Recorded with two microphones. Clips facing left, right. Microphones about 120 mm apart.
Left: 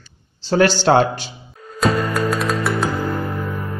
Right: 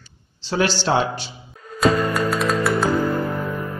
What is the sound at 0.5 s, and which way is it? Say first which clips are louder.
Speech: left 5 dB; 50° left (ahead or behind).